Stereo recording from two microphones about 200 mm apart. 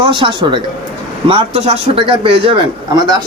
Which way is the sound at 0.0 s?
25° right (ahead or behind).